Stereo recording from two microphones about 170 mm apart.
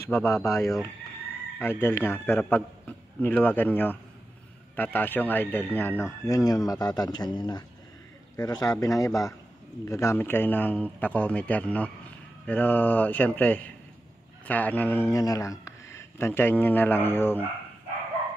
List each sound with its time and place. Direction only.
0.0 s a man's voice: 15° left (ahead or behind)